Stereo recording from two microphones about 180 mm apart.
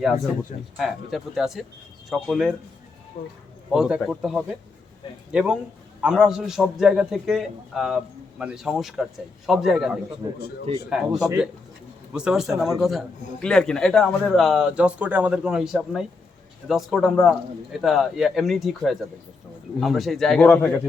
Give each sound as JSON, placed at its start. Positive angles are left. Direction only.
{"t": 0.8, "sound": "a man's voice", "side_deg": 0}
{"t": 3.2, "sound": "speech", "side_deg": 45}
{"t": 3.7, "sound": "a man's voice", "side_deg": -5}
{"t": 10.2, "sound": "a man's voice", "side_deg": -20}
{"t": 10.8, "sound": "a man's voice", "side_deg": 0}